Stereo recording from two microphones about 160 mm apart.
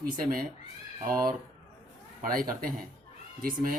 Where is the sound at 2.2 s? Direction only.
65° right (ahead or behind).